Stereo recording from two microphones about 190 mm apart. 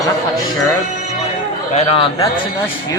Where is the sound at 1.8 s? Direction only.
30° left (ahead or behind).